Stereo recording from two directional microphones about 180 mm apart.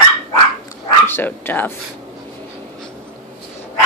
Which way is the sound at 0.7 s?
10° left (ahead or behind).